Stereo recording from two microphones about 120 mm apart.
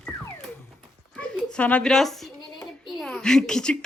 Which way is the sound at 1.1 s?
10° left (ahead or behind).